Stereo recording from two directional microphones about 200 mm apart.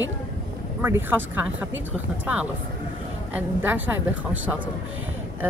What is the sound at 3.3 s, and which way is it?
Speech, 10° right (ahead or behind).